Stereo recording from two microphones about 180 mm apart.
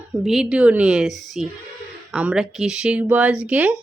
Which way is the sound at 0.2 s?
Centre (ahead or behind).